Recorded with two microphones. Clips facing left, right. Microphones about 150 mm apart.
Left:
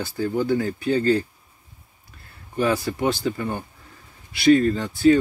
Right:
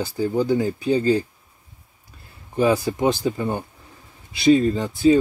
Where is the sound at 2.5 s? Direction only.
20° right (ahead or behind).